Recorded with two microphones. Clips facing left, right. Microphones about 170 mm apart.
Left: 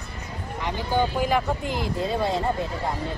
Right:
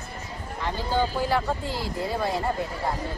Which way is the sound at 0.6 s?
15° left (ahead or behind).